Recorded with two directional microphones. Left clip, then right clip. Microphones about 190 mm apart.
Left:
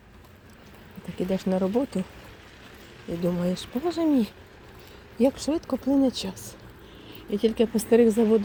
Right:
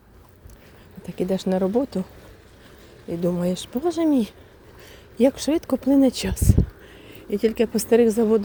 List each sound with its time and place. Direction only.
1.2 s speech: 25° right (ahead or behind)
3.1 s speech: 20° right (ahead or behind)
5.1 s speech: 30° right (ahead or behind)
7.3 s speech: 15° right (ahead or behind)